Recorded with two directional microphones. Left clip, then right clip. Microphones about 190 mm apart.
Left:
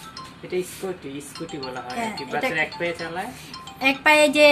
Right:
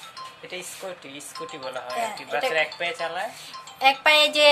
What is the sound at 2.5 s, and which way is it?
Speech, 60° right (ahead or behind).